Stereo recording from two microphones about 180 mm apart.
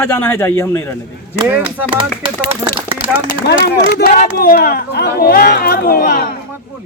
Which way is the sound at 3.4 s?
60° left (ahead or behind).